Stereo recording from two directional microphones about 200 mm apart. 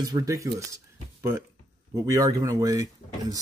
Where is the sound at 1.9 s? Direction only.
15° right (ahead or behind).